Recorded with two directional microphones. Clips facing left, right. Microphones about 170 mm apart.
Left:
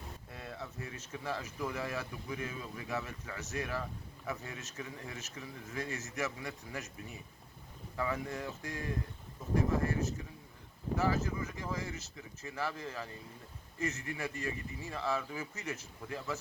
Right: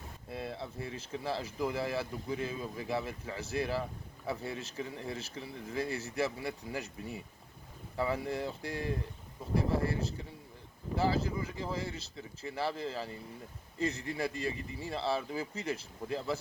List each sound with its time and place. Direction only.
0.3 s speech: 30° right (ahead or behind)
7.9 s speech: 30° right (ahead or behind)